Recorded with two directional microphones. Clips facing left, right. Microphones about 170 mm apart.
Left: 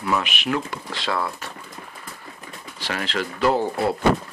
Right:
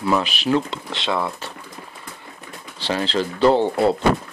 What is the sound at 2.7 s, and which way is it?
Speech, 30° right (ahead or behind).